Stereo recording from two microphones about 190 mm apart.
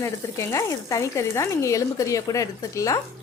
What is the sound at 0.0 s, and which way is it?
Speech, 15° left (ahead or behind).